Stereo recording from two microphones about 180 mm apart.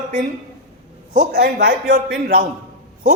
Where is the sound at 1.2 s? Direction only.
65° right (ahead or behind).